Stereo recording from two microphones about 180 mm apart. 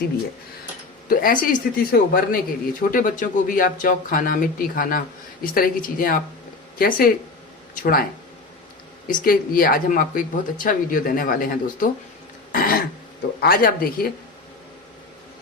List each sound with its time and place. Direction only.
1.0 s speech: 50° left (ahead or behind)
9.0 s speech: 50° left (ahead or behind)
12.5 s throat clearing: 50° left (ahead or behind)
13.4 s speech: 55° left (ahead or behind)